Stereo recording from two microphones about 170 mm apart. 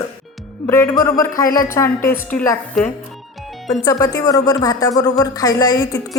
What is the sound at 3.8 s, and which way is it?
Speech, 20° left (ahead or behind).